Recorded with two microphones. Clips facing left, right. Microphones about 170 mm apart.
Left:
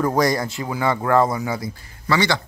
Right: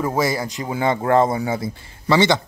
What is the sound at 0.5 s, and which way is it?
A man's voice, 20° right (ahead or behind).